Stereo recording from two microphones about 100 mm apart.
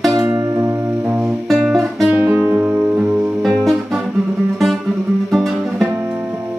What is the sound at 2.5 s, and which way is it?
Music, 10° right (ahead or behind).